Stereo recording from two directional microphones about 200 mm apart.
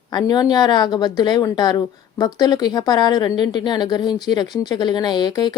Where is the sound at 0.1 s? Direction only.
20° left (ahead or behind).